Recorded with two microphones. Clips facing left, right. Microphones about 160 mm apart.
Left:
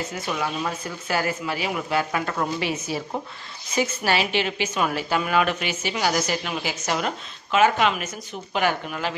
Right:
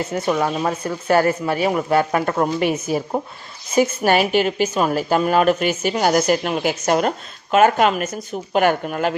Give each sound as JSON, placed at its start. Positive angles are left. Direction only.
{"t": 0.1, "sound": "a woman's voice", "side_deg": -50}